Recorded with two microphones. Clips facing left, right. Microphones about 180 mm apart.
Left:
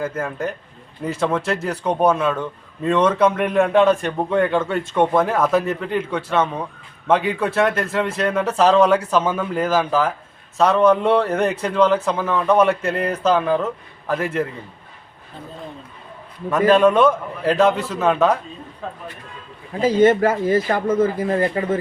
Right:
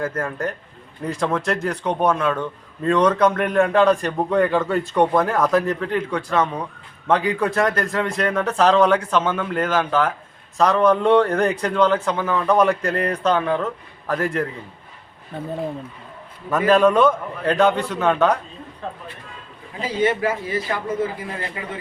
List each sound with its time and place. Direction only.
0.0 s a man's voice: 5° left (ahead or behind)
16.5 s a man's voice: centre (ahead or behind)
19.8 s a man's voice: 45° left (ahead or behind)